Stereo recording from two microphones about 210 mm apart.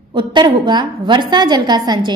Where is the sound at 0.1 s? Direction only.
20° right (ahead or behind).